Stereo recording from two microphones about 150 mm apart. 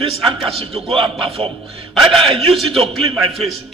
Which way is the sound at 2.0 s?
Centre (ahead or behind).